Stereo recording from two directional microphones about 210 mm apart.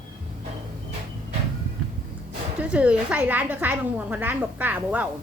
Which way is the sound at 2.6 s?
5° right (ahead or behind).